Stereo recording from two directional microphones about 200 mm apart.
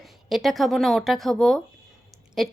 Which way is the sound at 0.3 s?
Centre (ahead or behind).